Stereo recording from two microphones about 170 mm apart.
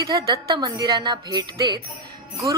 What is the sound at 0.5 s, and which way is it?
Speech, 25° right (ahead or behind).